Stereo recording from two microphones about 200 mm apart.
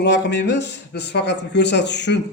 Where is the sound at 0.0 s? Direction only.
60° left (ahead or behind).